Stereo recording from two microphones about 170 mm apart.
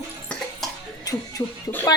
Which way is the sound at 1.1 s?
20° left (ahead or behind).